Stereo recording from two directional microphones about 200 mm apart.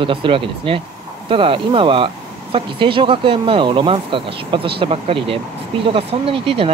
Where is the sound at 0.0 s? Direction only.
25° right (ahead or behind).